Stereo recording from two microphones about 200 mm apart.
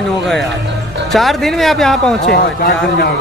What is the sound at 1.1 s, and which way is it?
Speech, centre (ahead or behind).